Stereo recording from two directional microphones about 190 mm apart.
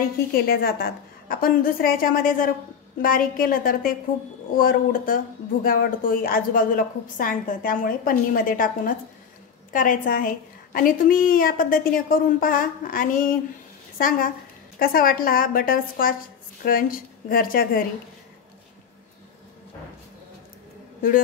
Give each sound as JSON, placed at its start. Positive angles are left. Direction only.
{"t": 0.3, "sound": "speech", "side_deg": 50}